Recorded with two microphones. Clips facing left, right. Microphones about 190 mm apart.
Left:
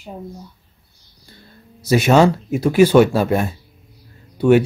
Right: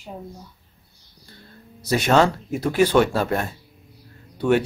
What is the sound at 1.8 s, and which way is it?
Speech, 10° left (ahead or behind).